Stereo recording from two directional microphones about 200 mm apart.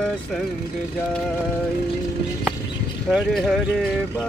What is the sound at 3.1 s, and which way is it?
Speech, centre (ahead or behind).